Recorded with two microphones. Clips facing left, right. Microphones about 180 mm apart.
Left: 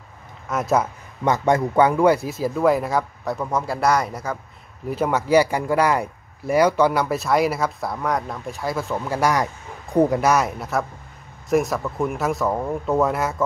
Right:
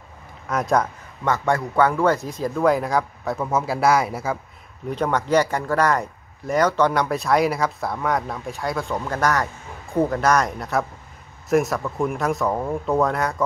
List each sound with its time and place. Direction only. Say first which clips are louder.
0.5 s speech: even; 5° left (ahead or behind)
1.2 s speech: left 3 dB; 15° left (ahead or behind); by 4.4 s 5° right (ahead or behind)
4.8 s speech: left 1 dB; 5° left (ahead or behind)